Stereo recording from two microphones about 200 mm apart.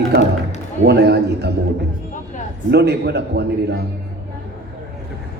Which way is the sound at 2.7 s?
55° right (ahead or behind).